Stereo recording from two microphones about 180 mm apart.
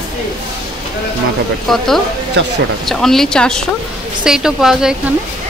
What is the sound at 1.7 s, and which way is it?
Speech, centre (ahead or behind).